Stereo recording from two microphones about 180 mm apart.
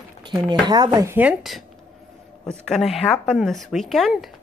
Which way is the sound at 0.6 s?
25° right (ahead or behind).